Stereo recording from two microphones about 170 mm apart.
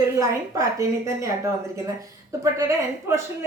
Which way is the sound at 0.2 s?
20° right (ahead or behind).